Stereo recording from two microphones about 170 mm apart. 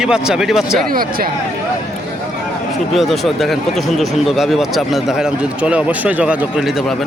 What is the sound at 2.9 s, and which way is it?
Speech, centre (ahead or behind).